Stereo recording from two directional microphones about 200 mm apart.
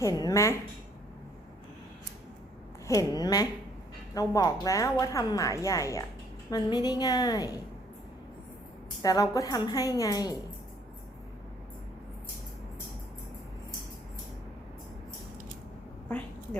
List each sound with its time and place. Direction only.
0.0 s a woman's voice: 15° left (ahead or behind)
2.8 s a woman's voice: 15° left (ahead or behind)
9.0 s a woman's voice: 20° left (ahead or behind)
16.0 s a sound: 10° left (ahead or behind)